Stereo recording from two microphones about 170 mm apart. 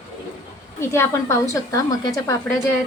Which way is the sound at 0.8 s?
15° left (ahead or behind).